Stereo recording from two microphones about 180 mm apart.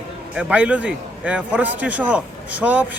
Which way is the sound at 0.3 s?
5° right (ahead or behind).